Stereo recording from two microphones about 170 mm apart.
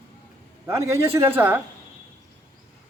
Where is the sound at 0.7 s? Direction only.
15° right (ahead or behind).